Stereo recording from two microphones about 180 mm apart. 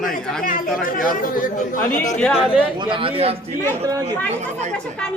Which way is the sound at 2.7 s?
25° right (ahead or behind).